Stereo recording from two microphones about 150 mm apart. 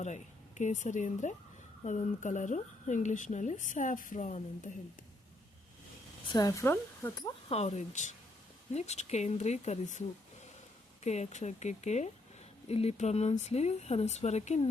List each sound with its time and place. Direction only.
0.0 s a woman's voice: 50° left (ahead or behind)
6.3 s speech: 25° left (ahead or behind)
7.5 s speech: 50° left (ahead or behind)
11.0 s speech: 50° left (ahead or behind)